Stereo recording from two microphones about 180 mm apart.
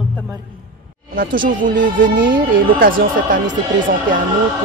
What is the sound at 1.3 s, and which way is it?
Speech, 50° right (ahead or behind).